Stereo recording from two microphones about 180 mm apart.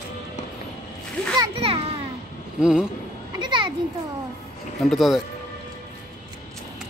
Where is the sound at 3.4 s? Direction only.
25° right (ahead or behind).